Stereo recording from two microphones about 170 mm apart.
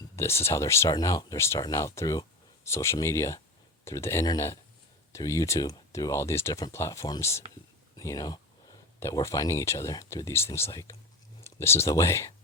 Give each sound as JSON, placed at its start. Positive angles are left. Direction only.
{"t": 0.2, "sound": "speech", "side_deg": 15}